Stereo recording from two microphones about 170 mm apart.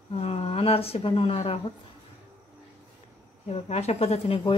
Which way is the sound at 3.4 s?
40° left (ahead or behind).